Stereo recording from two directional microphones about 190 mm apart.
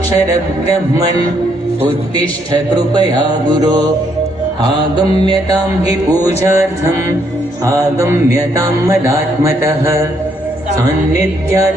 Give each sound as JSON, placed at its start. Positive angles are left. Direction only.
{"t": 2.1, "sound": "mantra", "side_deg": -20}
{"t": 5.2, "sound": "mantra", "side_deg": -20}